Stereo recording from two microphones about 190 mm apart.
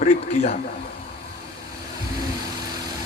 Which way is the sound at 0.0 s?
45° left (ahead or behind).